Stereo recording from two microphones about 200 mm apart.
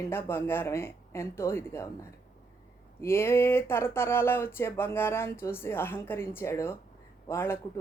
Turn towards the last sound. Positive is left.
turn(degrees=10)  # may be behind; listen again after turning